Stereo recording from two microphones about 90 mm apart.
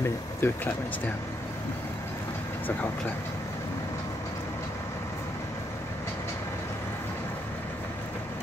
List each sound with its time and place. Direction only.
0.0 s speech: 25° left (ahead or behind)